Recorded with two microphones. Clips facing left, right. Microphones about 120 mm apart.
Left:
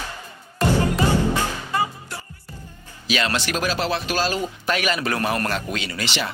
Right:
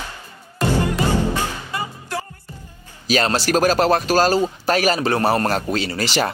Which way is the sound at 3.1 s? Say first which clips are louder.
Right 5 dB; 40° right (ahead or behind).